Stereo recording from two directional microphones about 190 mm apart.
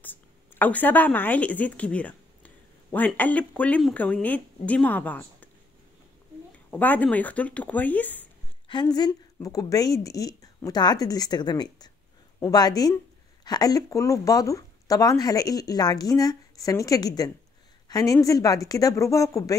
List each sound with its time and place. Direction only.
0.0 s a woman's voice: 10° left (ahead or behind)
6.7 s speech: 10° left (ahead or behind)
8.6 s speech: 25° left (ahead or behind)